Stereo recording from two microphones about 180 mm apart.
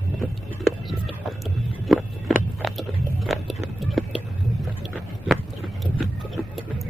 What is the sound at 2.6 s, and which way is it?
Biting, centre (ahead or behind).